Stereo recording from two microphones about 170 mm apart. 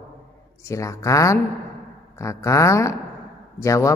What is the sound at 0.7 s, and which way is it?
Speech, 20° left (ahead or behind).